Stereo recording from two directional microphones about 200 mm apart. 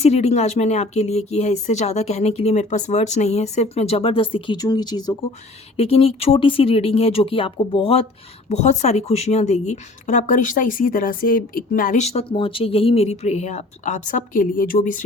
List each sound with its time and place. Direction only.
0.0 s speech: 35° left (ahead or behind)